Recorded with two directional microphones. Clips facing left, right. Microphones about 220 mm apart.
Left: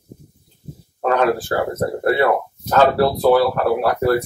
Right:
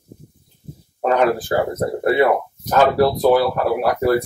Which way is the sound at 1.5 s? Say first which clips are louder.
Right 1 dB; 20° right (ahead or behind).